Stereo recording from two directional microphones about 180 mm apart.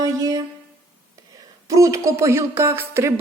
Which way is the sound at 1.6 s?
15° right (ahead or behind).